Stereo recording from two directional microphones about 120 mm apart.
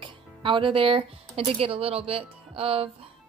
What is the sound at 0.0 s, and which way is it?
Speech, 45° right (ahead or behind).